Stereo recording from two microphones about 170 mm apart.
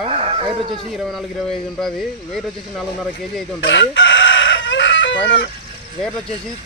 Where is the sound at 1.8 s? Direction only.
Centre (ahead or behind).